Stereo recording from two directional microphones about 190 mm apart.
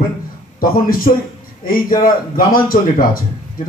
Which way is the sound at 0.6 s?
50° left (ahead or behind).